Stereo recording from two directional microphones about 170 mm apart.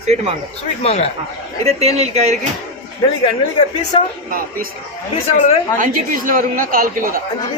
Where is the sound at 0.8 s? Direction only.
40° left (ahead or behind).